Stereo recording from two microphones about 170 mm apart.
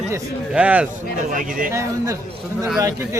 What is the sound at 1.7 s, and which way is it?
Speech, 15° right (ahead or behind).